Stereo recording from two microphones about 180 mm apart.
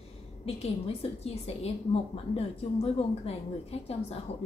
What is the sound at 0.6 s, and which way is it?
A woman's voice, 35° left (ahead or behind).